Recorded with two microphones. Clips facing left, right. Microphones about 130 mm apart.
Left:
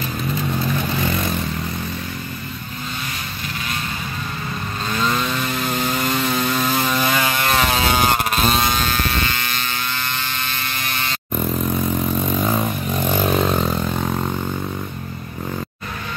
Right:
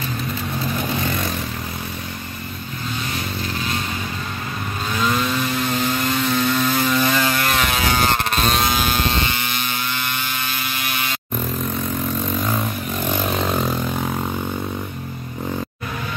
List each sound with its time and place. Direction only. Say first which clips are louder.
6.1 s vehicle: right 1 dB; 5° left (ahead or behind)
7.4 s vehicle: left 2 dB; 30° left (ahead or behind)
7.9 s vehicle: even; 15° left (ahead or behind)
8.3 s a sound: left 1 dB; centre (ahead or behind)
8.9 s vehicle: right 1 dB; 20° right (ahead or behind)
13.3 s vehicle: left 2 dB; centre (ahead or behind)